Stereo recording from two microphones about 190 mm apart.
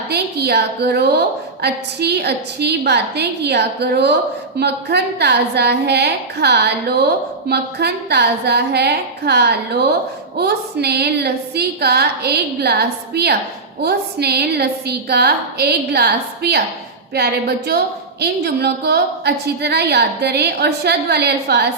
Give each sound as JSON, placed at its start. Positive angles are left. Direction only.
{"t": 0.1, "sound": "a woman's voice", "side_deg": -60}